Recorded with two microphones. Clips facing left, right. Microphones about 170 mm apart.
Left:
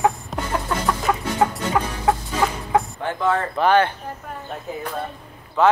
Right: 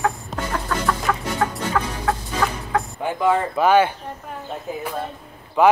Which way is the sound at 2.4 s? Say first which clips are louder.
Left 1 dB; 20° left (ahead or behind).